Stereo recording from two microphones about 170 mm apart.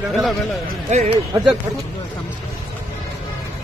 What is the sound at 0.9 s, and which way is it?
Speech, 45° right (ahead or behind).